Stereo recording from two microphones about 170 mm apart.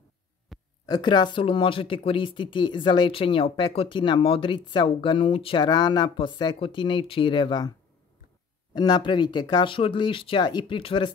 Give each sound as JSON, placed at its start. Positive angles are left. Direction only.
{"t": 0.5, "sound": "a sound", "side_deg": 0}
{"t": 0.8, "sound": "speech", "side_deg": 25}
{"t": 8.7, "sound": "speech", "side_deg": 25}